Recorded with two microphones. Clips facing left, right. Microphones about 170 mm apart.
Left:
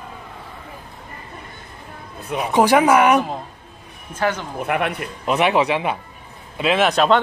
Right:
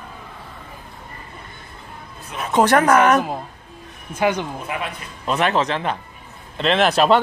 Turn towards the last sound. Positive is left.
turn(degrees=0)  # may be behind; listen again after turning